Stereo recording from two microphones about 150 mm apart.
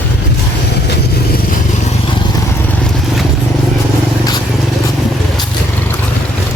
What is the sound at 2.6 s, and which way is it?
Vehicle, 10° left (ahead or behind).